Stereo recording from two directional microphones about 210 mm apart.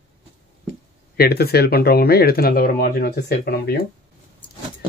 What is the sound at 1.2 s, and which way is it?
Speech, 50° left (ahead or behind).